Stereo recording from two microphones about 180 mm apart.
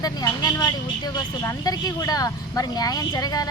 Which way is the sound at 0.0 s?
20° left (ahead or behind).